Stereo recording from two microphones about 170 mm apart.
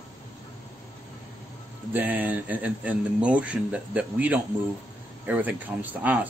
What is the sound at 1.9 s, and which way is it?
Speech, 10° right (ahead or behind).